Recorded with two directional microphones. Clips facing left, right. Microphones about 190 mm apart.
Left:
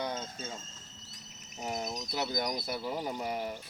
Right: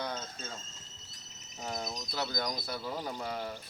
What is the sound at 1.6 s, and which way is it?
Speech, 10° left (ahead or behind).